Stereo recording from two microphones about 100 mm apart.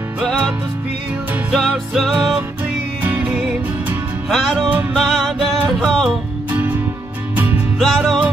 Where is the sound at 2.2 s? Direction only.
15° right (ahead or behind).